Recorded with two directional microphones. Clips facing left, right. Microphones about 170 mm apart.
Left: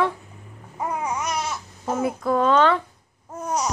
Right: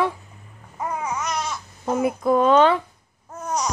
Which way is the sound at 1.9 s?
15° right (ahead or behind).